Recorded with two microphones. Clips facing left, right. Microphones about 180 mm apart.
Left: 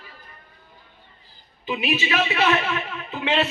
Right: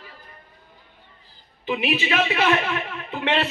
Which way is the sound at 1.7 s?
50° right (ahead or behind).